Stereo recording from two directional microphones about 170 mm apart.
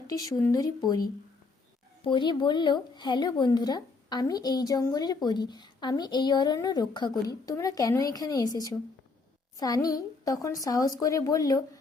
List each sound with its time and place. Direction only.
0.1 s speech: 20° left (ahead or behind)
2.0 s speech: 30° left (ahead or behind)
9.6 s a woman's voice: 20° left (ahead or behind)